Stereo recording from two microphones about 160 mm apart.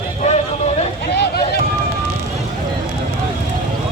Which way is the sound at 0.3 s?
45° left (ahead or behind).